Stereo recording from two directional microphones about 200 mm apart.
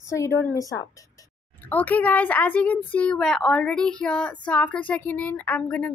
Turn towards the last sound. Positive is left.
turn(degrees=5)  # may be behind; listen again after turning